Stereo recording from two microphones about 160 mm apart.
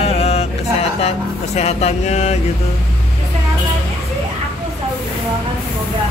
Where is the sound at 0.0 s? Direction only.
40° left (ahead or behind).